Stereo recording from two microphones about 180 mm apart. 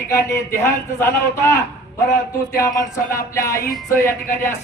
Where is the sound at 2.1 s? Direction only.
15° left (ahead or behind).